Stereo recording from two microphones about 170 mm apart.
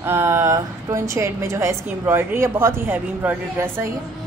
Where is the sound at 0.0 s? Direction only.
15° right (ahead or behind).